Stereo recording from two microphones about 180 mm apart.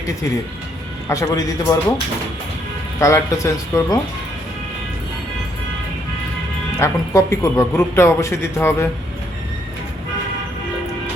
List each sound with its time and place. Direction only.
1.0 s speech: 15° left (ahead or behind)
3.0 s speech: 15° left (ahead or behind)
6.7 s speech: 15° left (ahead or behind)